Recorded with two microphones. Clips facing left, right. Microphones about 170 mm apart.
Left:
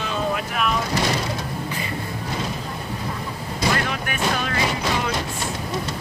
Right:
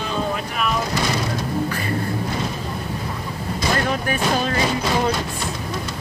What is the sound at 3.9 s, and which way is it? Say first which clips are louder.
Music: right 4 dB; 35° right (ahead or behind).